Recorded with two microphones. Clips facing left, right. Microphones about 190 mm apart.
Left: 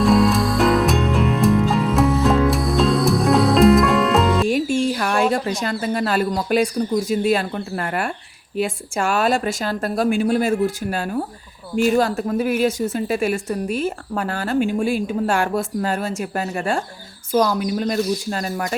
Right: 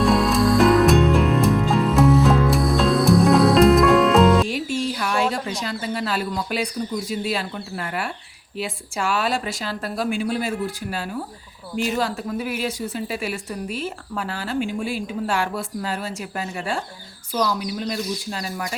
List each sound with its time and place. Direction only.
0.0 s music: centre (ahead or behind)
4.4 s music: 50° left (ahead or behind)
5.3 s speech: 50° left (ahead or behind)